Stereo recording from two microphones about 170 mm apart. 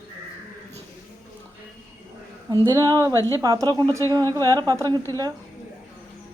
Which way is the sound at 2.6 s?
20° right (ahead or behind).